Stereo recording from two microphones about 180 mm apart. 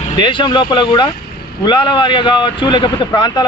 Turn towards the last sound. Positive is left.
turn(degrees=25)  # may be behind; listen again after turning